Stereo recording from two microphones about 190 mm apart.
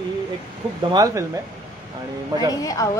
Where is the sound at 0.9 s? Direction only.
20° right (ahead or behind).